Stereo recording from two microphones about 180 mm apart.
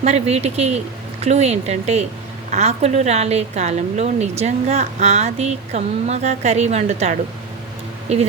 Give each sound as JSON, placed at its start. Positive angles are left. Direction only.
{"t": 0.0, "sound": "a woman's voice", "side_deg": -35}